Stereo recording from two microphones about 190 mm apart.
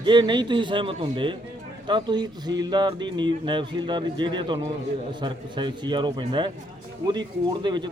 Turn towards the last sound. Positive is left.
turn(degrees=-25)  # may be behind; listen again after turning